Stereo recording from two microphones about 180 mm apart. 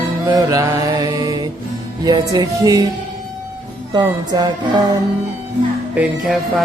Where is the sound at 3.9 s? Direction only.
20° right (ahead or behind).